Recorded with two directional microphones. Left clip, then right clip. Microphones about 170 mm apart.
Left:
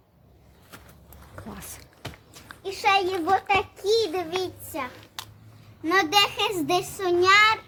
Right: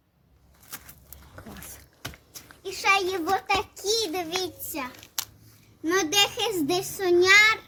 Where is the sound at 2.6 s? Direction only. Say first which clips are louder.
Left 1 dB; 30° right (ahead or behind).